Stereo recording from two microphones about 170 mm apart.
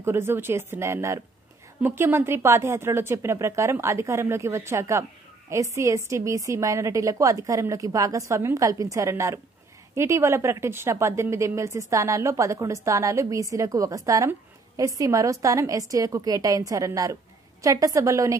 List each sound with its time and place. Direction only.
0.0 s a woman's voice: 15° right (ahead or behind)